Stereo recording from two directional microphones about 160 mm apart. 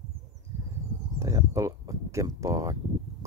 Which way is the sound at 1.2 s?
20° right (ahead or behind).